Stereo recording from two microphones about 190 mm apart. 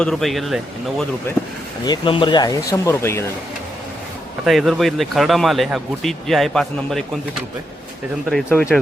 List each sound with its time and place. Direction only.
0.0 s speech: centre (ahead or behind)
1.8 s speech: 25° left (ahead or behind)
4.4 s speech: centre (ahead or behind)
8.3 s speech: centre (ahead or behind)